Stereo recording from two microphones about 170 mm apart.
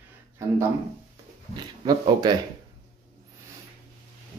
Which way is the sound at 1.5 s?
25° right (ahead or behind).